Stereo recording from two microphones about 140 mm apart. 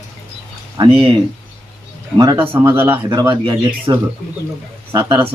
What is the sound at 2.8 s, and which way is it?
Speech, 30° right (ahead or behind).